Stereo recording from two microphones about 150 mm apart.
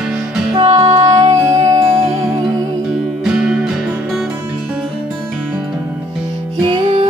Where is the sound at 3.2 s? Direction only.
5° right (ahead or behind).